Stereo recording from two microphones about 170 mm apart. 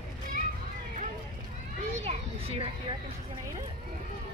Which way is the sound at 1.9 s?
40° right (ahead or behind).